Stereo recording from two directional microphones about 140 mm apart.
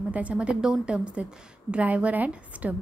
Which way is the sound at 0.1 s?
10° right (ahead or behind).